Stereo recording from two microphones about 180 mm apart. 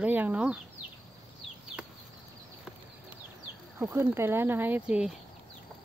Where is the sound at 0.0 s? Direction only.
10° right (ahead or behind).